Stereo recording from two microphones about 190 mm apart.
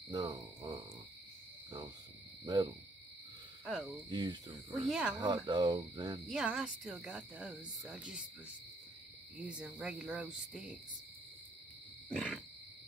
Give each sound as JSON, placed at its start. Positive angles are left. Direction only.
{"t": 0.1, "sound": "a sound", "side_deg": -20}
{"t": 2.4, "sound": "owl", "side_deg": -20}
{"t": 3.6, "sound": "cricket", "side_deg": 0}
{"t": 4.1, "sound": "speech", "side_deg": -25}
{"t": 4.7, "sound": "speech", "side_deg": 0}
{"t": 5.2, "sound": "speech", "side_deg": -25}
{"t": 6.2, "sound": "speech", "side_deg": -5}
{"t": 9.5, "sound": "speech", "side_deg": -5}
{"t": 12.1, "sound": "speech", "side_deg": 0}